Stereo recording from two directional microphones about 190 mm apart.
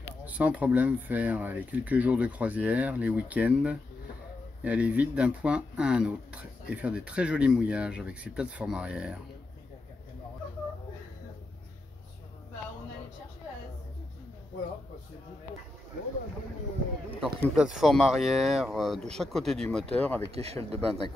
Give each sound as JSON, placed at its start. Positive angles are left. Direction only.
{"t": 0.2, "sound": "speech", "side_deg": -10}
{"t": 17.1, "sound": "speech", "side_deg": 5}
{"t": 20.2, "sound": "speech", "side_deg": -35}